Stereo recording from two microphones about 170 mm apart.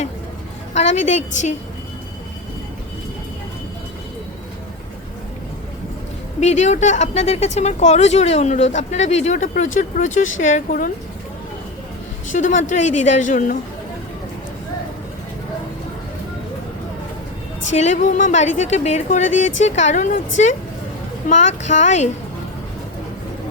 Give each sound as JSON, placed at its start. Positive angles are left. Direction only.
{"t": 0.9, "sound": "a woman's voice", "side_deg": 45}
{"t": 6.4, "sound": "a woman's voice", "side_deg": 45}
{"t": 12.3, "sound": "a woman's voice", "side_deg": 45}
{"t": 17.7, "sound": "a woman's voice", "side_deg": 45}